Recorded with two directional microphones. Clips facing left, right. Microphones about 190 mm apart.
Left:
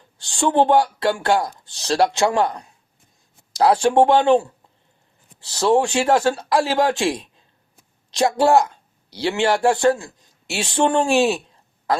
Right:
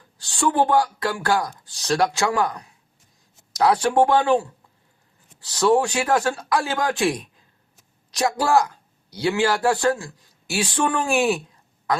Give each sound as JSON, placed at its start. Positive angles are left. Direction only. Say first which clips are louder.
{"t": 0.3, "sound": "speech", "louder": "left 3 dB", "side_deg": 25}
{"t": 5.5, "sound": "speech", "louder": "left 1 dB", "side_deg": 30}